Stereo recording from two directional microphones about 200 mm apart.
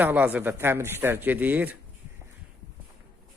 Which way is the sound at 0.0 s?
10° right (ahead or behind).